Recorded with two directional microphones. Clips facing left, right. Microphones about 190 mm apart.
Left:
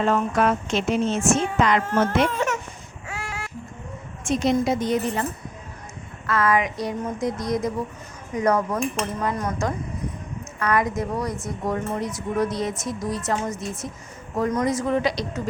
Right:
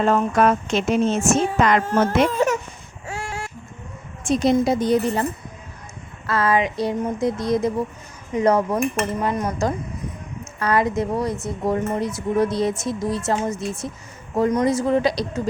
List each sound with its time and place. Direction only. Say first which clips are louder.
0.0 s a woman's voice: right 3 dB; 45° right (ahead or behind)
1.8 s a woman's voice: right 2 dB; 35° right (ahead or behind)
3.1 s a sound: right 4 dB; 30° right (ahead or behind)
4.2 s a woman's voice: right 3 dB; 35° right (ahead or behind)
6.2 s a woman's voice: right 2 dB; 30° right (ahead or behind)